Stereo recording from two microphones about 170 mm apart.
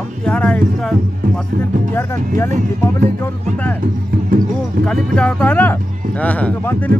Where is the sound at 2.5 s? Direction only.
45° right (ahead or behind).